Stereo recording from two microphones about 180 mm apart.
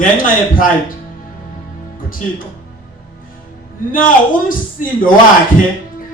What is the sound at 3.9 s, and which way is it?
A man's voice, 50° left (ahead or behind).